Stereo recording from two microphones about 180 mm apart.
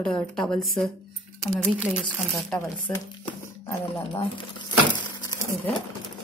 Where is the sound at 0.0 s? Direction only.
Centre (ahead or behind).